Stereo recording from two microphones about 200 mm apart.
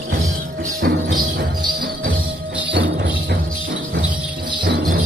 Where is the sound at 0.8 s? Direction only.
50° right (ahead or behind).